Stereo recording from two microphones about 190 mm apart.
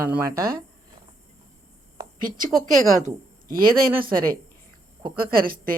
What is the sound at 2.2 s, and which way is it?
Speech, 45° right (ahead or behind).